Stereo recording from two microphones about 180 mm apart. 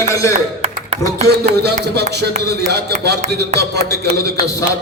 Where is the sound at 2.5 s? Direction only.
65° right (ahead or behind).